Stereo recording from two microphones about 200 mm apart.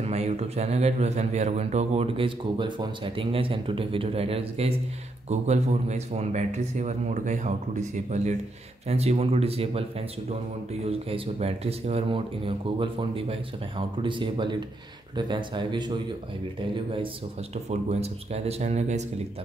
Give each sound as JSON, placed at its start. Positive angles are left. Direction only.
{"t": 0.0, "sound": "a man's voice", "side_deg": -30}